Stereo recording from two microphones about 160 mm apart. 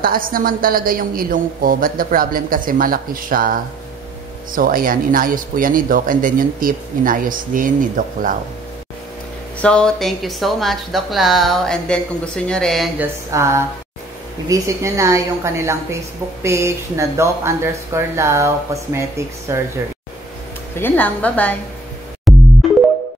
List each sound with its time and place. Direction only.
0.0 s speech: 65° right (ahead or behind)
9.6 s speech: 5° left (ahead or behind)
13.0 s speech: 15° right (ahead or behind)
20.7 s a woman's voice: 10° left (ahead or behind)
22.3 s music: centre (ahead or behind)